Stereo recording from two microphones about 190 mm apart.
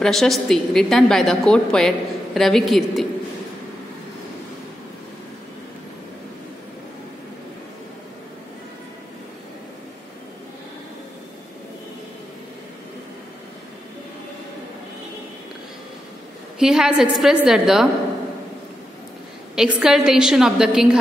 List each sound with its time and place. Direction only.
0.0 s a woman's voice: centre (ahead or behind)
16.5 s a woman's voice: 5° right (ahead or behind)
19.5 s a woman's voice: 5° right (ahead or behind)